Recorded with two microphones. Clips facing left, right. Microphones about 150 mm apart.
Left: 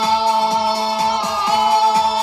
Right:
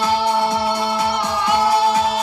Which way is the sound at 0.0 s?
20° left (ahead or behind).